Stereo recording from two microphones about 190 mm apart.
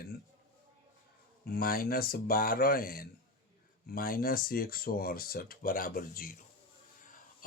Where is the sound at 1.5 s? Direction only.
50° left (ahead or behind).